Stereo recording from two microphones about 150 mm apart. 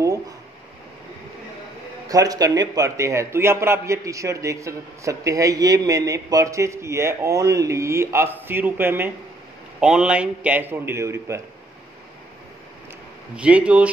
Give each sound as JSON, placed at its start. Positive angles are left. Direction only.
{"t": 2.0, "sound": "a man's voice", "side_deg": -25}
{"t": 13.4, "sound": "a man's voice", "side_deg": -10}